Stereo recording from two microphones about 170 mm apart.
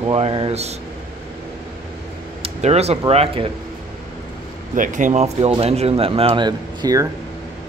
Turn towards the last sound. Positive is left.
turn(degrees=-20)  # may be behind; listen again after turning